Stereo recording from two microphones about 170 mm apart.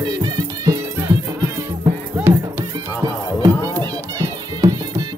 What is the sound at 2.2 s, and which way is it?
Music, 10° right (ahead or behind).